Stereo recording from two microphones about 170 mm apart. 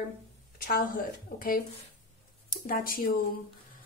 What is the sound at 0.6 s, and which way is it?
A woman's voice, 55° left (ahead or behind).